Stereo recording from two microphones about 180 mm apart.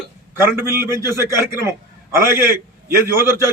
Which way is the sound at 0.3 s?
15° right (ahead or behind).